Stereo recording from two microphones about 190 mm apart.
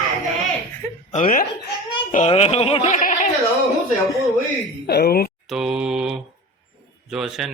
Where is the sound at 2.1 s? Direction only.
35° left (ahead or behind).